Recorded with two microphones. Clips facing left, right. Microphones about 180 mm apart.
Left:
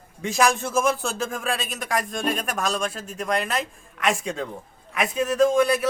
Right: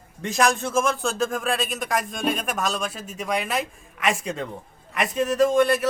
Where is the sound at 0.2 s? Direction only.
Centre (ahead or behind).